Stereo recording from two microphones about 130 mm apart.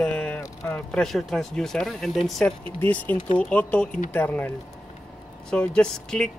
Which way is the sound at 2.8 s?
15° left (ahead or behind).